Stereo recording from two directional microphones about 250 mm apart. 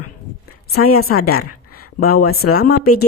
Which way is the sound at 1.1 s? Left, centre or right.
Left.